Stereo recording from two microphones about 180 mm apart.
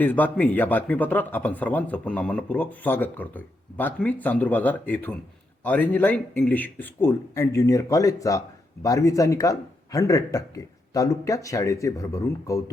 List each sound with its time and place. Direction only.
0.0 s a man's voice: 10° left (ahead or behind)